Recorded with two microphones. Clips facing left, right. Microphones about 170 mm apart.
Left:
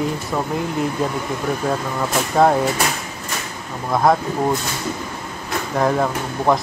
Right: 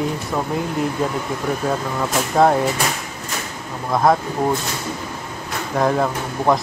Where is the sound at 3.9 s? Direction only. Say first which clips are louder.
Even; centre (ahead or behind).